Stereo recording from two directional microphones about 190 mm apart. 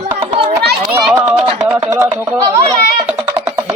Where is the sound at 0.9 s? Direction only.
15° right (ahead or behind).